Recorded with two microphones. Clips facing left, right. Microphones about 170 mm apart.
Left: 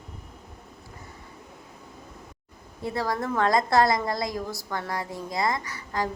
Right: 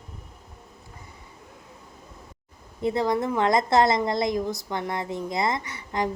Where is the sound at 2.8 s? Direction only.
20° right (ahead or behind).